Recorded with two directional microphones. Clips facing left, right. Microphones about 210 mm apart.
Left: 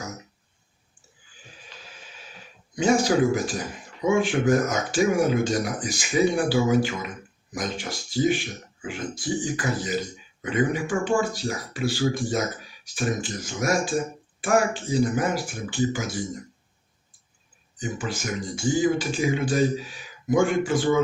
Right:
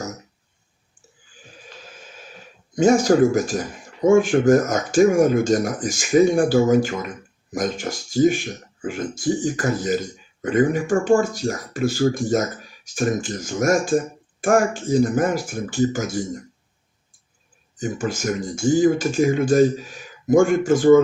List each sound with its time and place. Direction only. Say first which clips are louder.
2.7 s speech: right 5 dB; 45° right (ahead or behind)
17.7 s speech: right 5 dB; 45° right (ahead or behind)